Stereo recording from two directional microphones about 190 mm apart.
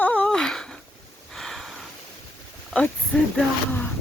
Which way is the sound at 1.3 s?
Centre (ahead or behind).